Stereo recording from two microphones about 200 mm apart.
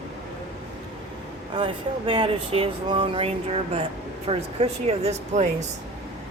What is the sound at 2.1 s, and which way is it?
Speech, 25° right (ahead or behind).